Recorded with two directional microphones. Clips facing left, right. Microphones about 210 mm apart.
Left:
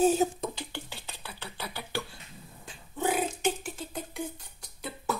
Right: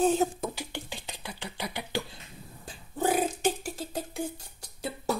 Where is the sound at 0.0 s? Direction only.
Centre (ahead or behind).